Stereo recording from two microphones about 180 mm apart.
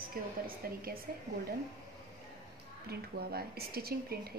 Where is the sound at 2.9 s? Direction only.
60° right (ahead or behind).